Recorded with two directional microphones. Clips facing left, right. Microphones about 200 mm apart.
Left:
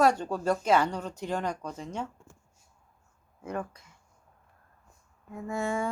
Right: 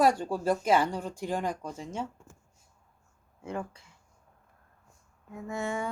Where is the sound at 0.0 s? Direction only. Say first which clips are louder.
Even; 10° right (ahead or behind).